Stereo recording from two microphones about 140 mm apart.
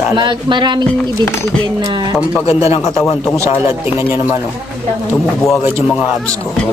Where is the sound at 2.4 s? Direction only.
45° left (ahead or behind).